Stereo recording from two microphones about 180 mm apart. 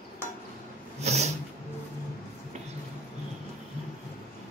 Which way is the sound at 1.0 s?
40° right (ahead or behind).